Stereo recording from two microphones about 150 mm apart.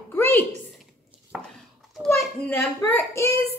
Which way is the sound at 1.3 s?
10° right (ahead or behind).